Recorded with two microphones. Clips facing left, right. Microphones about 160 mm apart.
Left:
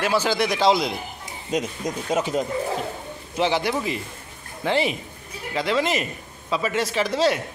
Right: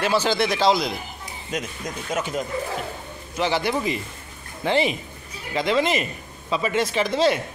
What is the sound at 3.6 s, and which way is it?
Speech, centre (ahead or behind).